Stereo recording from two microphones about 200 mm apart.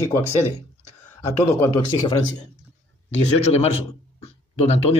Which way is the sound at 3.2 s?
30° left (ahead or behind).